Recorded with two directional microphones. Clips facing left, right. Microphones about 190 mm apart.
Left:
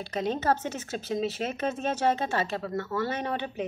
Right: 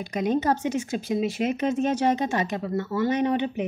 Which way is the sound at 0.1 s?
15° right (ahead or behind).